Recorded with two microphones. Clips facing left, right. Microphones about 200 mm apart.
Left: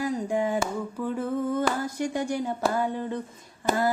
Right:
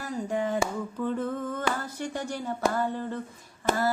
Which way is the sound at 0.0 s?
15° left (ahead or behind).